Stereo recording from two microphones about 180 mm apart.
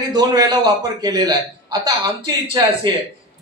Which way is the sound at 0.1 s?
20° right (ahead or behind).